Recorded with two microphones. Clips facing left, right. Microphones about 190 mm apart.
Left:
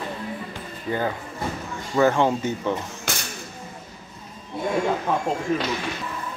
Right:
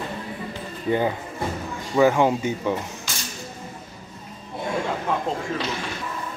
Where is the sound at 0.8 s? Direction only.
20° right (ahead or behind).